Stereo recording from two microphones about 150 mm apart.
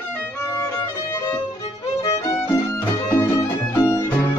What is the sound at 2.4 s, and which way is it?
Music, 15° left (ahead or behind).